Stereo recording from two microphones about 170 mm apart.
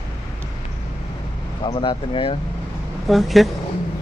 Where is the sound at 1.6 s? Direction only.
30° left (ahead or behind).